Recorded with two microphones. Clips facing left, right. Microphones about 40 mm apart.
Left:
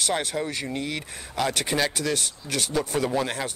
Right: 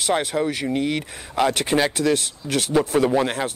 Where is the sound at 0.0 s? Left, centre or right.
Centre.